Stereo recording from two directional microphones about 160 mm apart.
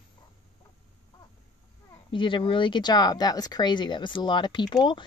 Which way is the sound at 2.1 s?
30° left (ahead or behind).